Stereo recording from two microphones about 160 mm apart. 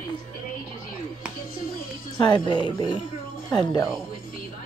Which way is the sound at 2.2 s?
30° left (ahead or behind).